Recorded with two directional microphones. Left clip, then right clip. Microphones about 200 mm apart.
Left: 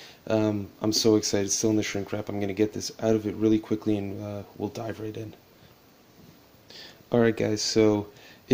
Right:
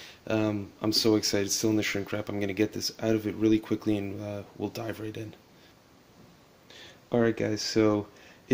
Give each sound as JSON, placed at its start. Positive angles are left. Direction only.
{"t": 0.0, "sound": "speech", "side_deg": 10}
{"t": 6.7, "sound": "speech", "side_deg": 15}